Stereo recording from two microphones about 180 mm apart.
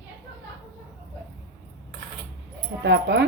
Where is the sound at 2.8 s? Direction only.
70° right (ahead or behind).